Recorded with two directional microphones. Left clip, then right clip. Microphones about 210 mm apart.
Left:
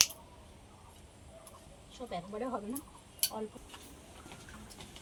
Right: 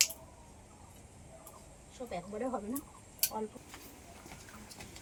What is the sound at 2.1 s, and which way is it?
Speech, 5° right (ahead or behind).